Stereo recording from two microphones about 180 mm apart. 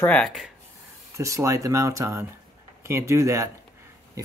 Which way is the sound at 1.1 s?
15° right (ahead or behind).